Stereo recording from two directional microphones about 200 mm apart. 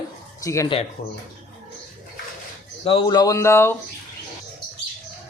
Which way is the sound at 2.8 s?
25° left (ahead or behind).